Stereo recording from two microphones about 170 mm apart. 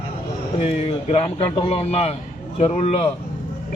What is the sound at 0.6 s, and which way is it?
Speech, 35° left (ahead or behind).